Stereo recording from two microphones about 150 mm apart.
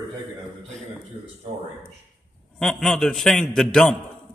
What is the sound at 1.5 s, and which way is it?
Speech, 40° right (ahead or behind).